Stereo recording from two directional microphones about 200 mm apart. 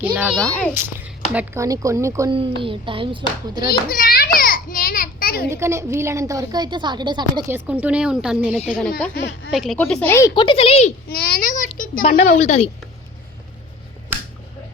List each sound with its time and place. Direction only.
0.0 s speech: 5° right (ahead or behind)
2.6 s a woman's voice: 25° right (ahead or behind)
3.7 s a sound: 45° left (ahead or behind)
5.5 s a woman's voice: 15° right (ahead or behind)
7.5 s speech: 5° right (ahead or behind)
9.1 s speech: 55° left (ahead or behind)
9.5 s speech: centre (ahead or behind); by 10.9 s 30° left (ahead or behind)
11.1 s a sound: 50° left (ahead or behind)
12.0 s a woman's voice: 35° left (ahead or behind)